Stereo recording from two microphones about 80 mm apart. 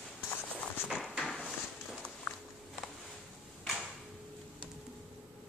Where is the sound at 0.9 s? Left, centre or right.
Centre.